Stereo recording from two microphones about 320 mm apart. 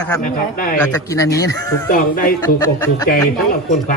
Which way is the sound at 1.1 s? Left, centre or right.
Centre.